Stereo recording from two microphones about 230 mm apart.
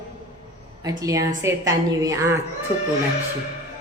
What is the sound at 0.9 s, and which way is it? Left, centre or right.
A woman's voice, centre.